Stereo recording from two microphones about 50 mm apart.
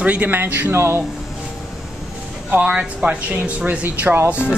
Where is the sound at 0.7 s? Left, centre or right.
Right.